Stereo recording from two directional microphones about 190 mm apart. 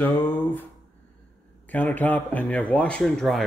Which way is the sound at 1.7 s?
10° left (ahead or behind).